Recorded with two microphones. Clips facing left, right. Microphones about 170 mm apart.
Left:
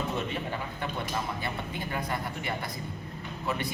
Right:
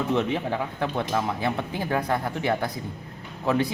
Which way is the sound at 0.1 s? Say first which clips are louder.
Right 8 dB; 90° right.